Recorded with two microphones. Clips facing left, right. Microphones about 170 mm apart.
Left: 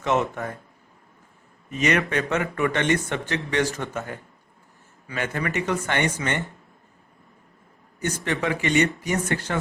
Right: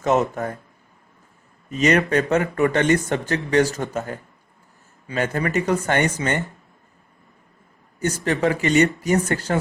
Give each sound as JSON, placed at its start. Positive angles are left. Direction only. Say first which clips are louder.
{"t": 0.0, "sound": "speech", "louder": "right 4 dB", "side_deg": -40}
{"t": 1.8, "sound": "speech", "louder": "right 5 dB", "side_deg": -40}
{"t": 7.9, "sound": "speech", "louder": "right 4 dB", "side_deg": -40}